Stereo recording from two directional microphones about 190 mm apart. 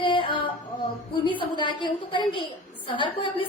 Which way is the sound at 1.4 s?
25° left (ahead or behind).